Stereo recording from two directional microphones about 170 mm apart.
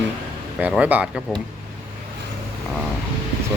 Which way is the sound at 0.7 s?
10° right (ahead or behind).